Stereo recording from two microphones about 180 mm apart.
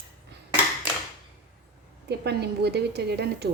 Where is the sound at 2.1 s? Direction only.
65° right (ahead or behind).